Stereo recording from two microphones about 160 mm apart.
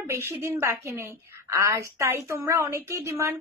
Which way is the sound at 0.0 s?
15° right (ahead or behind).